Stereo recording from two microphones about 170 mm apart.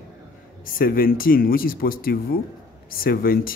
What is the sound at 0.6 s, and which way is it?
Speech, 55° left (ahead or behind).